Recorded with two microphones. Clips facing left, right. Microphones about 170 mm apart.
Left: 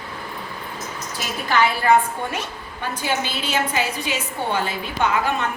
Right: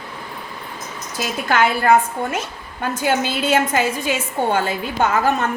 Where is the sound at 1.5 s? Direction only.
50° right (ahead or behind).